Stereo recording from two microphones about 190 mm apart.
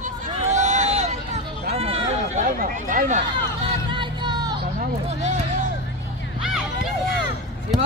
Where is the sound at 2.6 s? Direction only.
45° right (ahead or behind).